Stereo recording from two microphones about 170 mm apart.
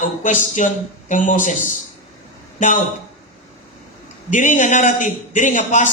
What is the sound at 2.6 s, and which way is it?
Speech, 45° left (ahead or behind).